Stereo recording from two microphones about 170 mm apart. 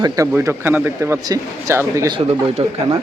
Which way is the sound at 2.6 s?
35° right (ahead or behind).